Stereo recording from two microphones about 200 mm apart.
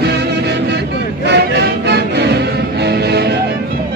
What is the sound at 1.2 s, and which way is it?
Music, 55° right (ahead or behind).